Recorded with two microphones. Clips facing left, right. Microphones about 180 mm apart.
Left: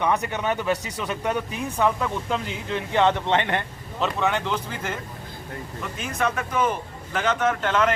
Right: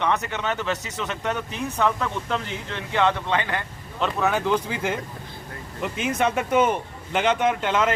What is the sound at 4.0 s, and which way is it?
Speech, centre (ahead or behind).